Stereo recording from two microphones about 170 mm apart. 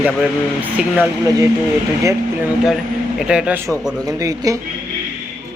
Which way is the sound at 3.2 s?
5° right (ahead or behind).